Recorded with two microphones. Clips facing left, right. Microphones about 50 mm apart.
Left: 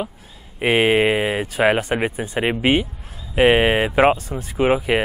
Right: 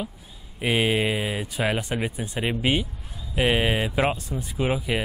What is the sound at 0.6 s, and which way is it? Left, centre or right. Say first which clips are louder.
A man's voice: left 7 dB; left.